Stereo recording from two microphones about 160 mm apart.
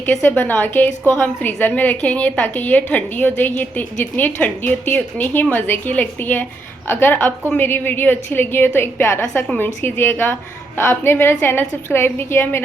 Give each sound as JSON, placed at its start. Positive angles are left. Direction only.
{"t": 0.0, "sound": "a woman's voice", "side_deg": 10}